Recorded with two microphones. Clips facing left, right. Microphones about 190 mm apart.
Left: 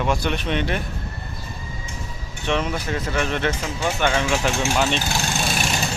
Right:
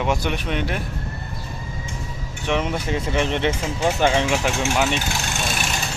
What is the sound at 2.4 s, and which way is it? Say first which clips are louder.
Speech: right 1 dB; 20° right (ahead or behind).